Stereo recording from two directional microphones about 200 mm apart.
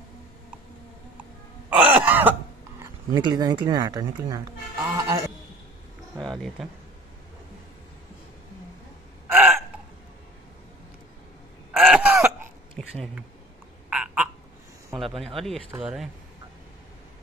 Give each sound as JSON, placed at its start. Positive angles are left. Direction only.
{"t": 1.7, "sound": "throat clearing", "side_deg": -5}
{"t": 3.2, "sound": "speech", "side_deg": -20}
{"t": 4.8, "sound": "a sound", "side_deg": -15}
{"t": 6.1, "sound": "speech", "side_deg": 0}
{"t": 9.3, "sound": "hiccup", "side_deg": -10}
{"t": 11.7, "sound": "a sound", "side_deg": 0}
{"t": 13.8, "sound": "frog", "side_deg": -5}
{"t": 15.0, "sound": "speech", "side_deg": 0}